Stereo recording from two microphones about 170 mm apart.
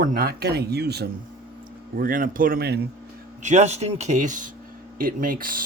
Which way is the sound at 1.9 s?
55° right (ahead or behind).